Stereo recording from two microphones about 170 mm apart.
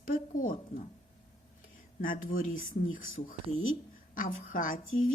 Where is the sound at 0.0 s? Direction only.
55° left (ahead or behind).